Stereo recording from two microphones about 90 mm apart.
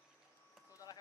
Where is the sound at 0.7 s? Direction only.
45° left (ahead or behind).